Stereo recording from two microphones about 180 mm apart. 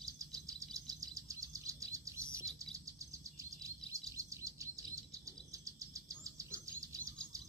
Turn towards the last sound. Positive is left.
turn(degrees=-20)  # may be behind; listen again after turning